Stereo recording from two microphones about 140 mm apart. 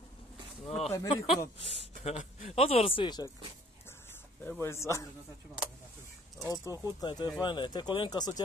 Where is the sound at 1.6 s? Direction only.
45° left (ahead or behind).